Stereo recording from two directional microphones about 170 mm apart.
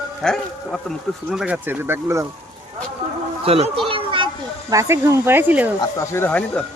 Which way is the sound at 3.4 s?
35° right (ahead or behind).